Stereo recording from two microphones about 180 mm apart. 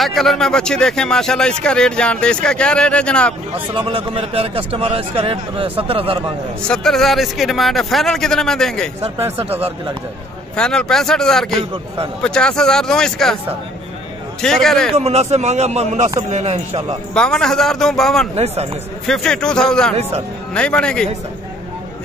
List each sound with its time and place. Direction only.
0.0 s speech: centre (ahead or behind)
3.6 s speech: 30° right (ahead or behind)
6.7 s speech: centre (ahead or behind)
10.5 s speech: 5° left (ahead or behind)
14.4 s speech: 5° left (ahead or behind)
14.9 s speech: 35° right (ahead or behind)
17.1 s speech: 5° left (ahead or behind)
18.3 s speech: 35° right (ahead or behind)
19.0 s speech: 5° left (ahead or behind)
20.0 s speech: 35° right (ahead or behind)
20.5 s speech: 5° left (ahead or behind)